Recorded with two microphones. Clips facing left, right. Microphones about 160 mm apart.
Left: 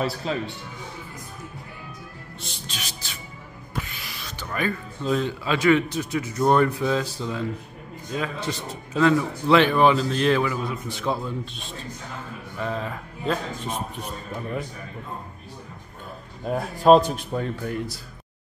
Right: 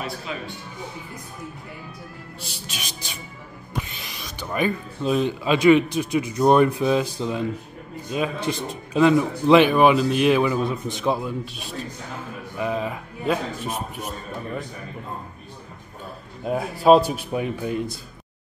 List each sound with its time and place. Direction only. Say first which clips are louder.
0.0 s a man's voice: left 5 dB; 35° left (ahead or behind)
2.4 s speech: even; 10° right (ahead or behind)
16.4 s speech: right 1 dB; 5° right (ahead or behind)